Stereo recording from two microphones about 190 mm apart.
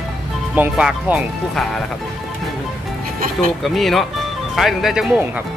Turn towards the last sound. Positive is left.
turn(degrees=0)  # may be behind; listen again after turning